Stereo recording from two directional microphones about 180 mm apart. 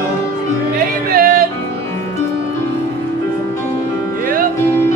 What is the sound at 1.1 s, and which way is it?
Music, 55° right (ahead or behind).